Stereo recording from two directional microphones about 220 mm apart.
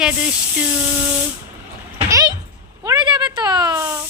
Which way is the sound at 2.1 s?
15° right (ahead or behind).